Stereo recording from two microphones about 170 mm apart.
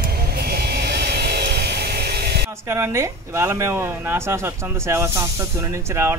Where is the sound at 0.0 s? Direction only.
65° right (ahead or behind).